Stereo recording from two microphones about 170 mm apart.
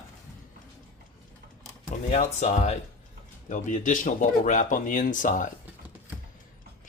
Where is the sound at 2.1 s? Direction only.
40° left (ahead or behind).